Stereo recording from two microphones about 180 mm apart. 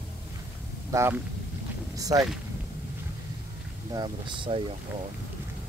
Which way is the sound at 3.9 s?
25° right (ahead or behind).